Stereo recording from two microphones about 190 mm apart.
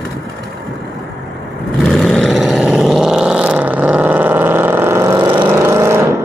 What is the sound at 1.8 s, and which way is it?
Vehicle, 5° left (ahead or behind).